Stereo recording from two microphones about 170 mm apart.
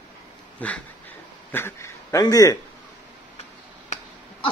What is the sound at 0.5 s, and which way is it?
Speech, 10° left (ahead or behind).